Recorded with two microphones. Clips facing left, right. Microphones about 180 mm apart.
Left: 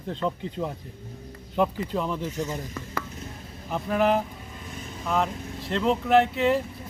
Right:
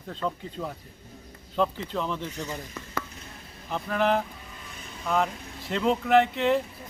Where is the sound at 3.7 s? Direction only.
5° left (ahead or behind).